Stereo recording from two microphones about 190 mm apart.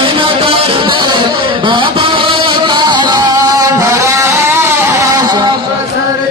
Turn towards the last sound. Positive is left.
turn(degrees=-25)  # may be behind; listen again after turning